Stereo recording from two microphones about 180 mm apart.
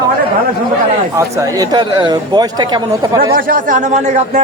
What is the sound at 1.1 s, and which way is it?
Speech, 15° right (ahead or behind).